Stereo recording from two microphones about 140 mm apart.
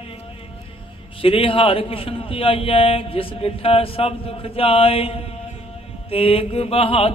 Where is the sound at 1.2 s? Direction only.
40° left (ahead or behind).